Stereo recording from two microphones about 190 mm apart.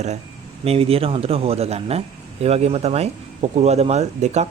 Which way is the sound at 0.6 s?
30° right (ahead or behind).